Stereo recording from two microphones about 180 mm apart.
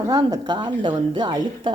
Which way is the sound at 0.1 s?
20° right (ahead or behind).